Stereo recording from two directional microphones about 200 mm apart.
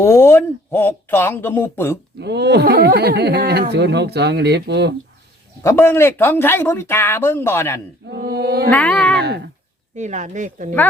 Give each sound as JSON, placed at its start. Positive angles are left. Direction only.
{"t": 0.0, "sound": "speech", "side_deg": 15}
{"t": 2.2, "sound": "speech", "side_deg": -55}
{"t": 5.6, "sound": "speech", "side_deg": 10}
{"t": 8.1, "sound": "a sound", "side_deg": -50}
{"t": 8.7, "sound": "speech", "side_deg": 5}
{"t": 9.9, "sound": "speech", "side_deg": -35}